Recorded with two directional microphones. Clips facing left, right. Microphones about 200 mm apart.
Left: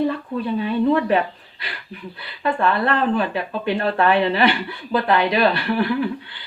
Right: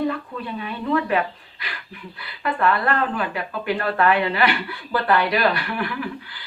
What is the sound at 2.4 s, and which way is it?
Speech, 25° left (ahead or behind).